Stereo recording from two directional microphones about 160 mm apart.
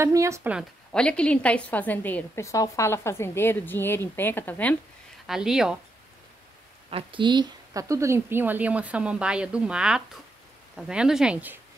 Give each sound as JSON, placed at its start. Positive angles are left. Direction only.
{"t": 0.0, "sound": "speech", "side_deg": -20}
{"t": 0.9, "sound": "a woman's voice", "side_deg": 5}
{"t": 5.2, "sound": "speech", "side_deg": -5}
{"t": 6.9, "sound": "speech", "side_deg": -35}